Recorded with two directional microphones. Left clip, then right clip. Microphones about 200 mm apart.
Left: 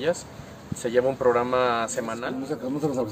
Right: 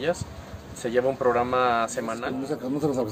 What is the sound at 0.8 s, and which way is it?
A woman's voice, 10° left (ahead or behind).